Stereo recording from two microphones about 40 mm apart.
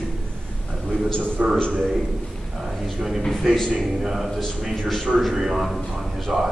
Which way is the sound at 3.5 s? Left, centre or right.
Centre.